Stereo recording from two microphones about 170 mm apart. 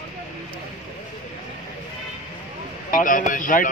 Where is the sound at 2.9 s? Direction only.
50° left (ahead or behind).